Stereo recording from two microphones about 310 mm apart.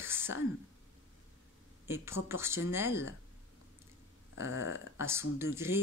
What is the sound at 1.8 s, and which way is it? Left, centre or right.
Speech, centre.